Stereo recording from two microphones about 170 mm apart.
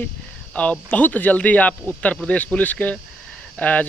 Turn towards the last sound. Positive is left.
turn(degrees=10)  # may be behind; listen again after turning